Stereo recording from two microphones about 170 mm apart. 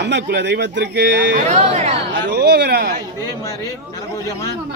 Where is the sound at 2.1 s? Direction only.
75° right (ahead or behind).